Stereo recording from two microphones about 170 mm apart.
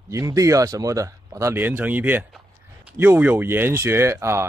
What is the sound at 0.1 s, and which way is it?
Speech, 20° right (ahead or behind).